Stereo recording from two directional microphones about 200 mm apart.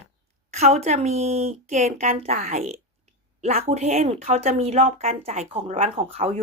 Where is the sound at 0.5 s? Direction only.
35° right (ahead or behind).